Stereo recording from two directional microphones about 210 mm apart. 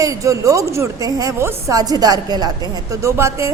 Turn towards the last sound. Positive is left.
turn(degrees=-15)  # may be behind; listen again after turning